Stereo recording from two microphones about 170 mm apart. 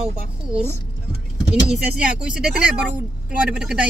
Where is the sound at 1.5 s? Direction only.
5° right (ahead or behind).